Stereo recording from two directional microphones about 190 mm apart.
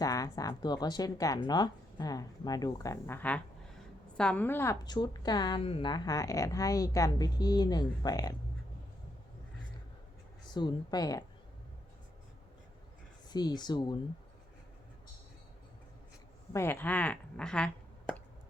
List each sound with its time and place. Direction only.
0.0 s a woman's voice: 20° left (ahead or behind)
10.5 s a woman's voice: 20° left (ahead or behind)
13.3 s a woman's voice: 20° left (ahead or behind)
16.5 s a woman's voice: 15° left (ahead or behind)